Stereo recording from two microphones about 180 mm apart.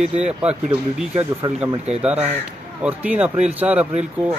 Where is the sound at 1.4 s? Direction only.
30° right (ahead or behind).